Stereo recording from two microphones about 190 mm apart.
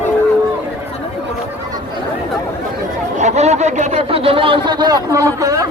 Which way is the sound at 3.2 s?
35° right (ahead or behind).